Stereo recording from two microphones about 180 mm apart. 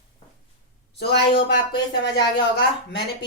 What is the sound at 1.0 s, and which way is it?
Speech, 65° left (ahead or behind).